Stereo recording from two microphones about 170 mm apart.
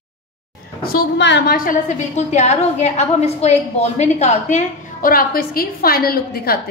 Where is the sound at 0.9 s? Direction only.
90° left.